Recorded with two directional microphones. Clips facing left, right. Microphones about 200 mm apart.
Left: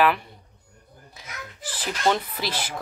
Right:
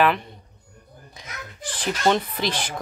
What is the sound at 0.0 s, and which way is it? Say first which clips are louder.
Speech: right 1 dB; 5° left (ahead or behind).